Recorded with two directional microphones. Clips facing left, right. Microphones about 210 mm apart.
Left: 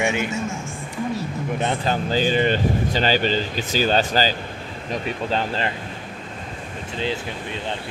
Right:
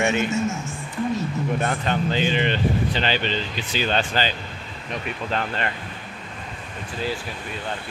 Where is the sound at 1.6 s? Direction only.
25° left (ahead or behind).